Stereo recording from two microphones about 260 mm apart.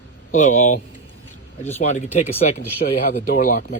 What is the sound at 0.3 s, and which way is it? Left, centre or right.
Speech, left.